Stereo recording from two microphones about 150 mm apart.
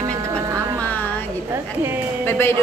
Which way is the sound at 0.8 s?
10° left (ahead or behind).